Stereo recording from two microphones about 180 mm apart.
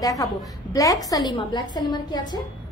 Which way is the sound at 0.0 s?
20° left (ahead or behind).